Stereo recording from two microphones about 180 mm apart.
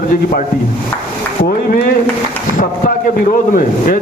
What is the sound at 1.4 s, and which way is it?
Speech, 55° left (ahead or behind).